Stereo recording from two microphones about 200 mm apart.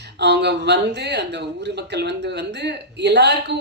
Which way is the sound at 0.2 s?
55° right (ahead or behind).